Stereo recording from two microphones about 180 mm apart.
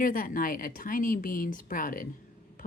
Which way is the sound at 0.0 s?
50° left (ahead or behind).